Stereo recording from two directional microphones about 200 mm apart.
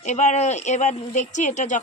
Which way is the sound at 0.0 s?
35° left (ahead or behind).